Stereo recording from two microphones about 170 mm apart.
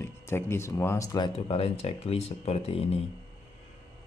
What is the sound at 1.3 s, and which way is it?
Speech, 35° left (ahead or behind).